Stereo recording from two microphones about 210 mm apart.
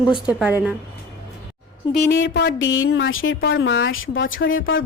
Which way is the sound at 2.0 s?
55° left (ahead or behind).